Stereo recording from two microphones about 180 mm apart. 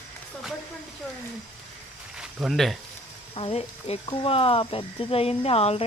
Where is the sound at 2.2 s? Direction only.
5° right (ahead or behind).